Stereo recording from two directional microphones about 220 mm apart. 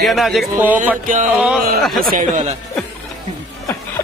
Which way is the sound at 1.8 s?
Centre (ahead or behind).